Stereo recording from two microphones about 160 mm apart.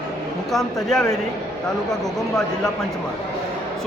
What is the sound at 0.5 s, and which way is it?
Speech, centre (ahead or behind).